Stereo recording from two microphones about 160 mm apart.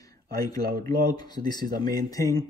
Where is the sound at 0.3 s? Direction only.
25° left (ahead or behind).